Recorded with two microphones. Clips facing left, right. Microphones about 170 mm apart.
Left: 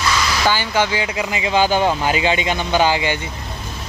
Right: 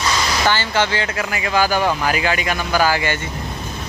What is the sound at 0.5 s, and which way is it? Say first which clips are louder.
Speech: left 1 dB; 15° left (ahead or behind).